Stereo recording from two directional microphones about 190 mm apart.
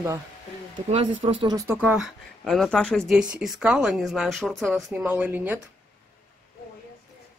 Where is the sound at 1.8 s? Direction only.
Centre (ahead or behind).